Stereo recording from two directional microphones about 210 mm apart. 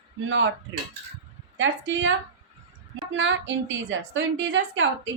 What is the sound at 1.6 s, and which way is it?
A woman's voice, 60° right (ahead or behind).